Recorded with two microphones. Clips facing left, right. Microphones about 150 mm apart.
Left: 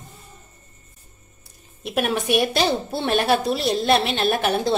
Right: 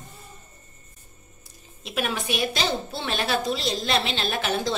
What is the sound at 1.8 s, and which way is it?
A woman's voice, 55° left (ahead or behind).